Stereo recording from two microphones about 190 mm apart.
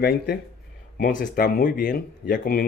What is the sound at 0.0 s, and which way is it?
Speech, 55° left (ahead or behind).